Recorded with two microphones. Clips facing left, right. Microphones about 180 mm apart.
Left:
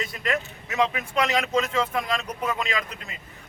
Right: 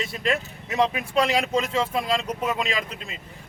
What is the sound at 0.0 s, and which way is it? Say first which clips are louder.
Speech: right 2 dB; 25° right (ahead or behind).